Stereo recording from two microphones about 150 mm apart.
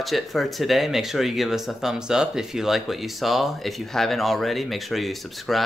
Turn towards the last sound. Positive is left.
turn(degrees=0)  # may be behind; listen again after turning